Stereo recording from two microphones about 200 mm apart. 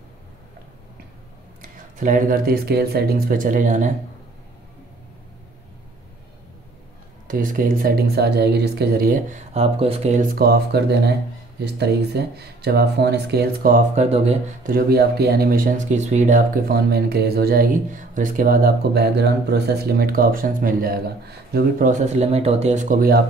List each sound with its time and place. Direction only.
2.0 s speech: 40° right (ahead or behind)
7.2 s speech: 45° right (ahead or behind)
14.0 s speech: 30° right (ahead or behind)
14.7 s speech: 50° right (ahead or behind)